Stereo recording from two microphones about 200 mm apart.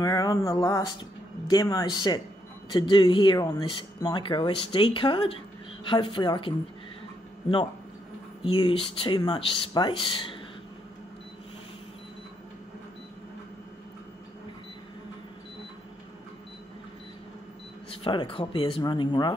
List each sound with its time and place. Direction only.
0.0 s speech: 20° left (ahead or behind)
8.5 s speech: 25° left (ahead or behind)
17.8 s speech: 25° left (ahead or behind)